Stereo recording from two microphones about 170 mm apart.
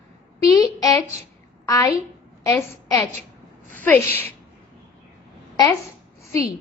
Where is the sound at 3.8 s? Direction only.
10° left (ahead or behind).